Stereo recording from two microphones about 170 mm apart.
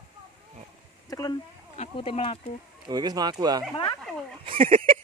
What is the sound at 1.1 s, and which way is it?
Speech, 25° left (ahead or behind).